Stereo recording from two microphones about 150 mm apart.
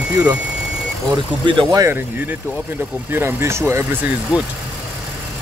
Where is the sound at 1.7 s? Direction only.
20° right (ahead or behind).